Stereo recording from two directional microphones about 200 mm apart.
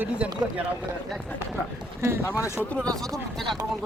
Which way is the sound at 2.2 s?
15° left (ahead or behind).